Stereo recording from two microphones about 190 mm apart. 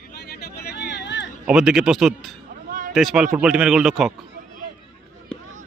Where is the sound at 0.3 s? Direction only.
55° left (ahead or behind).